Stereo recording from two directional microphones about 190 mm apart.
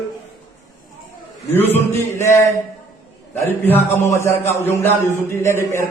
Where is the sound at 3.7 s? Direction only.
10° left (ahead or behind).